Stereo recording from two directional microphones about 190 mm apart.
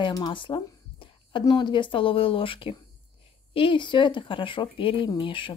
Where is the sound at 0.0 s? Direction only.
25° left (ahead or behind).